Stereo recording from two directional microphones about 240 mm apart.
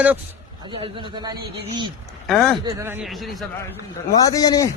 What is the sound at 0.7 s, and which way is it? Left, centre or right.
Speech, right.